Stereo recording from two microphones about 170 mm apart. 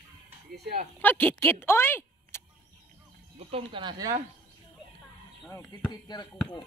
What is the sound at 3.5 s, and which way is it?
Speech, 30° right (ahead or behind).